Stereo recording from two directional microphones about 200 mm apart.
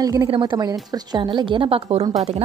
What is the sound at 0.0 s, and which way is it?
A woman's voice, 20° right (ahead or behind).